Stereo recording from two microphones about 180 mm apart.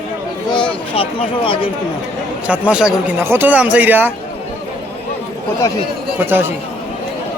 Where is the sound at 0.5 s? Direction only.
25° left (ahead or behind).